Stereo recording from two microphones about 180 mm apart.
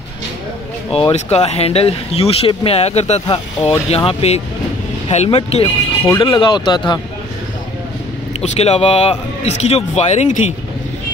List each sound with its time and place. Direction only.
0.9 s speech: 35° left (ahead or behind)
6.0 s speech: 20° left (ahead or behind)
8.4 s speech: 35° left (ahead or behind)